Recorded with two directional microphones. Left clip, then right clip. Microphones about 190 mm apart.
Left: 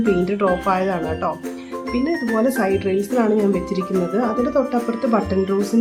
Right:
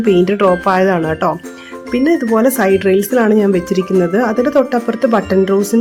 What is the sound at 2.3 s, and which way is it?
Speech, 40° right (ahead or behind).